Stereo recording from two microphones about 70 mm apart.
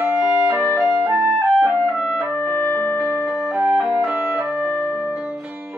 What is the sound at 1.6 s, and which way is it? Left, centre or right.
Music, centre.